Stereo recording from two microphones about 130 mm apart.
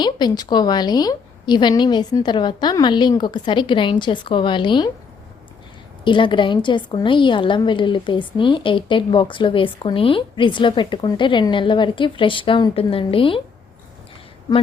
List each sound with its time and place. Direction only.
0.0 s a woman's voice: 35° left (ahead or behind)
6.1 s a woman's voice: 40° left (ahead or behind)